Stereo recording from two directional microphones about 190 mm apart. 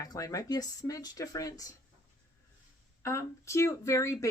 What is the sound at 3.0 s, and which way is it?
Speech, 15° left (ahead or behind).